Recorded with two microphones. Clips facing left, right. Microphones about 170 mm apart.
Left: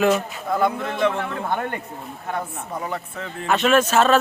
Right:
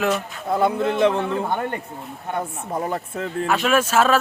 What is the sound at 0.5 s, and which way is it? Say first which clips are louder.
Speech: right 3 dB; 30° right (ahead or behind).